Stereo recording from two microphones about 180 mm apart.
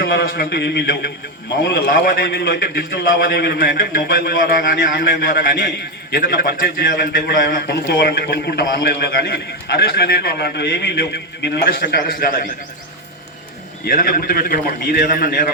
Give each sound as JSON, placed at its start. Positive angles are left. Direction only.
{"t": 0.0, "sound": "a man's voice", "side_deg": 60}
{"t": 13.8, "sound": "a man's voice", "side_deg": 50}